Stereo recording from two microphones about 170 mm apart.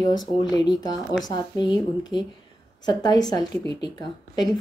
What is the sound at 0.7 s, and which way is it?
Speech, 25° left (ahead or behind).